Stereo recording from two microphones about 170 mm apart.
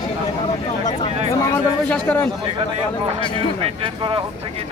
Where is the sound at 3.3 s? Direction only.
30° right (ahead or behind).